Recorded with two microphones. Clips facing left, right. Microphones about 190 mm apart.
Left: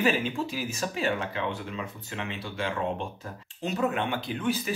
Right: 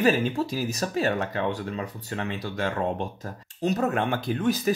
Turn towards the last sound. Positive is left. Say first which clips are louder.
# right 5 dB
turn(degrees=-40)  # may be behind; listen again after turning